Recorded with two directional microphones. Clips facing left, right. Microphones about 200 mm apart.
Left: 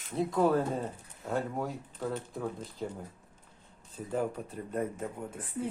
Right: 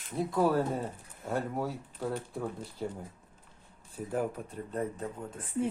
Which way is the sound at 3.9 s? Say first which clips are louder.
Even; 10° right (ahead or behind).